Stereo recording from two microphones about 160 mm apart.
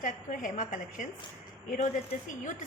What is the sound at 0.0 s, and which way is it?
A woman's voice, 55° left (ahead or behind).